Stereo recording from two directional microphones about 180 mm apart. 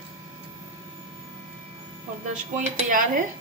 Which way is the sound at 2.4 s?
45° right (ahead or behind).